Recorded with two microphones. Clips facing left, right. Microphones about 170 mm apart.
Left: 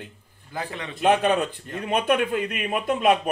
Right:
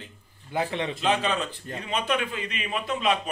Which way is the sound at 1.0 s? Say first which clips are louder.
Left 7 dB; 55° left (ahead or behind).